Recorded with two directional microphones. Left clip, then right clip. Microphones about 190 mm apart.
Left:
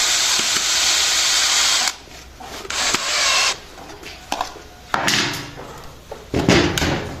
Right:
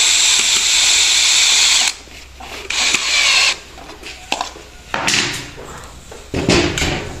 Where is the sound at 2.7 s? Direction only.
20° left (ahead or behind).